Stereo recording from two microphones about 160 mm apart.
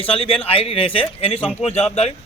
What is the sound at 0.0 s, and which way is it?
Speech, 35° left (ahead or behind).